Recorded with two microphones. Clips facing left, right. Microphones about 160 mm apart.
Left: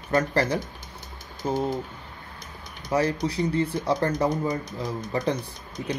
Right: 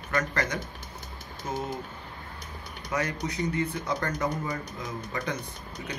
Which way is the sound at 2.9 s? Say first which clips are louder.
Left 7 dB; 30° left (ahead or behind).